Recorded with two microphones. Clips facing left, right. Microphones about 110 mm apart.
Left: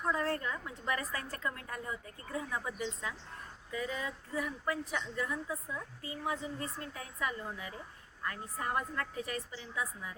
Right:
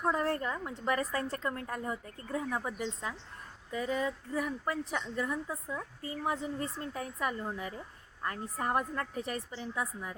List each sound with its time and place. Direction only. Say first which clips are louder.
0.0 s a woman's voice: right 3 dB; 30° right (ahead or behind)
1.7 s speech: right 4 dB; 40° right (ahead or behind)
2.8 s a woman's voice: right 2 dB; 30° right (ahead or behind)